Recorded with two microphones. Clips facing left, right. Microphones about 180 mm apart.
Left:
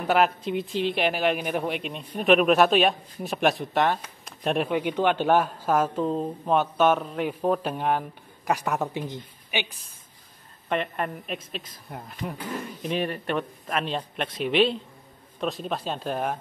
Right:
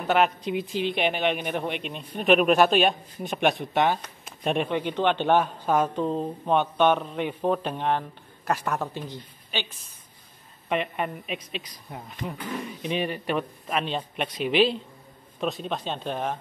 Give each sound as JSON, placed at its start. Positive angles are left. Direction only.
{"t": 0.0, "sound": "a woman's voice", "side_deg": 5}
{"t": 10.7, "sound": "speech", "side_deg": 0}